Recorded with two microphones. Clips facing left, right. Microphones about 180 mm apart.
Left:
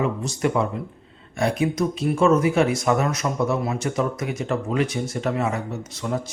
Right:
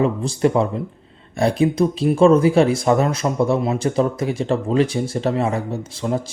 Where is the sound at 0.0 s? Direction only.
30° right (ahead or behind).